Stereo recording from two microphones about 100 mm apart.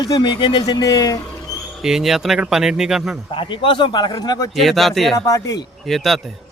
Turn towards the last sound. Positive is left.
turn(degrees=0)  # may be behind; listen again after turning